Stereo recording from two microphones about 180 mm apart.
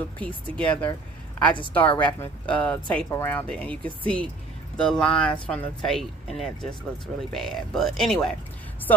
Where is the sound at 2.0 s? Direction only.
10° left (ahead or behind).